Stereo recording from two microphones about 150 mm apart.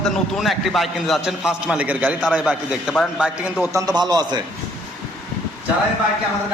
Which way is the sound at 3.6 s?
20° right (ahead or behind).